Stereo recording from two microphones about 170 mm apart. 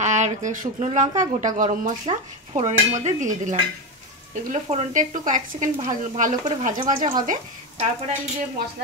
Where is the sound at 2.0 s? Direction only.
35° right (ahead or behind).